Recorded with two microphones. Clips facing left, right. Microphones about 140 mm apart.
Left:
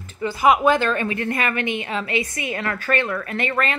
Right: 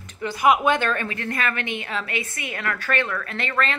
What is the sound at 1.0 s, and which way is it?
Speech, 15° left (ahead or behind).